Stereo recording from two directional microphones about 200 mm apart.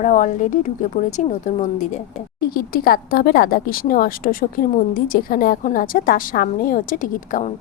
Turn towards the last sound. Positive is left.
turn(degrees=40)  # may be behind; listen again after turning